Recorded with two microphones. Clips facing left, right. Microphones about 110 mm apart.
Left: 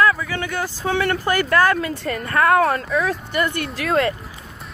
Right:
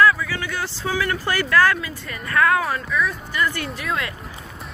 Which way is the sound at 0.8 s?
35° left (ahead or behind).